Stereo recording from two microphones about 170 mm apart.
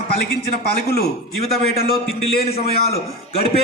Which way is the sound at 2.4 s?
35° left (ahead or behind).